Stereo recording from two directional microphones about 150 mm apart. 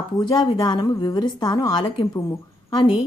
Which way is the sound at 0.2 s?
25° left (ahead or behind).